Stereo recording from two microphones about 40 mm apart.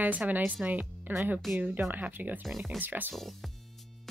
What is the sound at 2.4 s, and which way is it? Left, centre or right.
Speech, centre.